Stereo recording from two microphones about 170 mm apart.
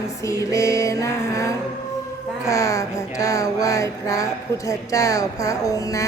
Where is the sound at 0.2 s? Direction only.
20° left (ahead or behind).